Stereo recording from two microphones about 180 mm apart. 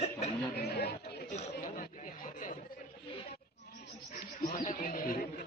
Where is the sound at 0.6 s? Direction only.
65° left (ahead or behind).